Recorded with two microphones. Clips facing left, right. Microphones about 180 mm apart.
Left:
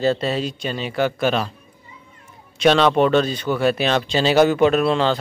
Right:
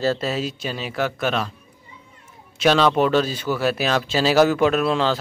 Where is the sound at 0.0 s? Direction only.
Centre (ahead or behind).